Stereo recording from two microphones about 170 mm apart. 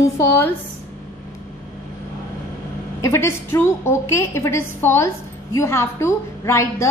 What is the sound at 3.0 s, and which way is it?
A woman's voice, 15° left (ahead or behind).